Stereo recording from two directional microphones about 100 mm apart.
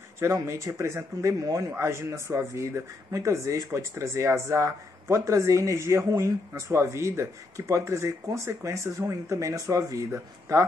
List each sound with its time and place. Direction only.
0.2 s a man's voice: 30° right (ahead or behind)